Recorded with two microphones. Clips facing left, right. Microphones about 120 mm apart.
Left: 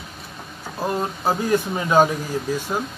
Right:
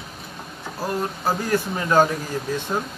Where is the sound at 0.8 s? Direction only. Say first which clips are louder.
Left 2 dB; 20° left (ahead or behind); by 2.8 s 5° left (ahead or behind).